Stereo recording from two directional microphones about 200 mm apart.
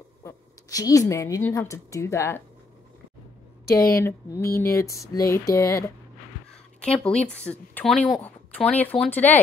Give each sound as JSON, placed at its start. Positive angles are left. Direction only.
{"t": 0.2, "sound": "a woman's voice", "side_deg": 15}
{"t": 3.6, "sound": "a sound", "side_deg": 15}
{"t": 6.8, "sound": "speech", "side_deg": 5}